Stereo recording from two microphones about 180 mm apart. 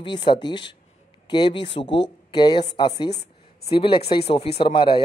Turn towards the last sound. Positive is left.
turn(degrees=30)  # may be behind; listen again after turning